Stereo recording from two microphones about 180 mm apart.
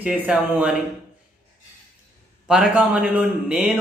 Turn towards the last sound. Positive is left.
turn(degrees=-5)  # may be behind; listen again after turning